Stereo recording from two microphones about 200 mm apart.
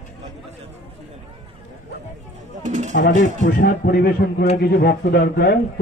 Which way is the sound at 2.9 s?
40° left (ahead or behind).